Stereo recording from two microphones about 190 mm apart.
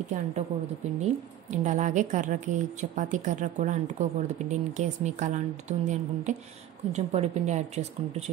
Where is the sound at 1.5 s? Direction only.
40° right (ahead or behind).